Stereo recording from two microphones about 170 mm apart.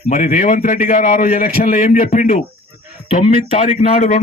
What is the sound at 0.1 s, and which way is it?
A man's voice, 50° left (ahead or behind).